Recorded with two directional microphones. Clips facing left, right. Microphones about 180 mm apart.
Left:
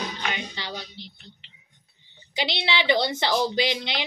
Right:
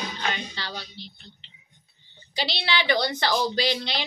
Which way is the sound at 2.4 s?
20° left (ahead or behind).